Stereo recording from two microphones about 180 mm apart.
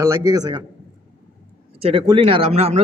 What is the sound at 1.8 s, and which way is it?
Speech, 30° right (ahead or behind).